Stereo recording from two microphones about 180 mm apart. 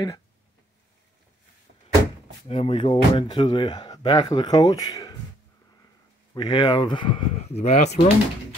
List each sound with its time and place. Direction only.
2.4 s speech: 30° left (ahead or behind)
6.3 s speech: 25° left (ahead or behind)